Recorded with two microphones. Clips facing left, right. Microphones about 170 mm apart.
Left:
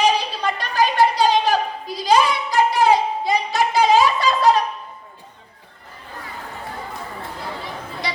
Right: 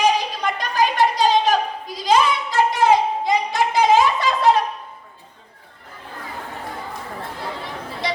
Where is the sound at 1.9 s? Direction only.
20° right (ahead or behind).